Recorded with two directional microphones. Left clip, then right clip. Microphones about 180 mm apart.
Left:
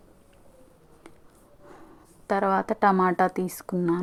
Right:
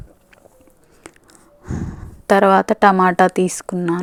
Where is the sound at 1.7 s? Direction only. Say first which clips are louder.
Right 18 dB; 30° right (ahead or behind).